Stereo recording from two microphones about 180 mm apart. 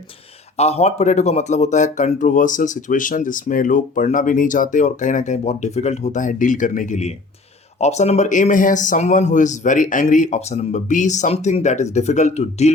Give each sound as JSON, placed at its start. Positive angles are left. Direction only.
{"t": 0.5, "sound": "speech", "side_deg": 35}